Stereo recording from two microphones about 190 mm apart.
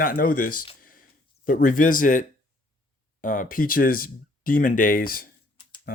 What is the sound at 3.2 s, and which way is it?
Speech, 45° left (ahead or behind).